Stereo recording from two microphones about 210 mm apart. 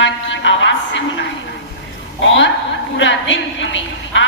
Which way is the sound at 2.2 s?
60° left (ahead or behind).